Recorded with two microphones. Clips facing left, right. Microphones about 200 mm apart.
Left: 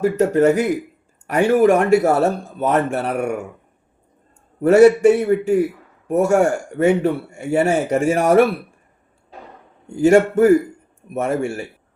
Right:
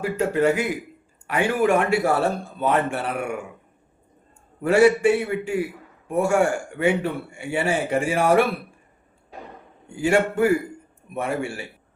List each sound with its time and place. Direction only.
0.0 s a man's voice: 40° left (ahead or behind)
4.6 s a man's voice: 40° left (ahead or behind)
9.9 s a man's voice: 40° left (ahead or behind)